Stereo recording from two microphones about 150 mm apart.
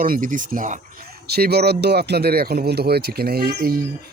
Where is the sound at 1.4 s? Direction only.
90° right.